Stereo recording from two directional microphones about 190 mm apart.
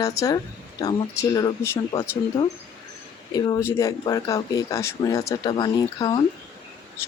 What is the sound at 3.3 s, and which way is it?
Speech, 20° left (ahead or behind).